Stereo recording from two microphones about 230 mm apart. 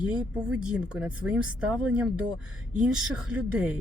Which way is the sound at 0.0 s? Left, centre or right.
Centre.